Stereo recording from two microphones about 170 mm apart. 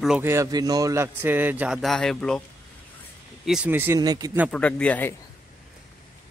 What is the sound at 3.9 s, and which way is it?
Speech, 20° right (ahead or behind).